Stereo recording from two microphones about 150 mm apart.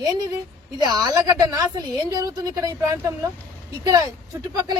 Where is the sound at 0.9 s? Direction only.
25° right (ahead or behind).